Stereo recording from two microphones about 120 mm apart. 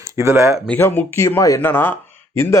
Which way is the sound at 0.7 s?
15° left (ahead or behind).